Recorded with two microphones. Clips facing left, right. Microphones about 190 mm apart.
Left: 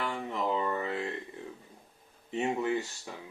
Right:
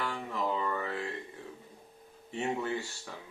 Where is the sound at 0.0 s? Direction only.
20° left (ahead or behind).